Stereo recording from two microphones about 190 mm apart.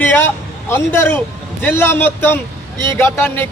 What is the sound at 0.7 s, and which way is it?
A man's voice, 10° left (ahead or behind).